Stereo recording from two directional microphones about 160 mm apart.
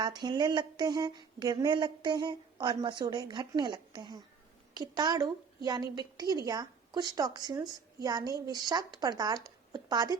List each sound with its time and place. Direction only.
0.0 s speech: 25° right (ahead or behind)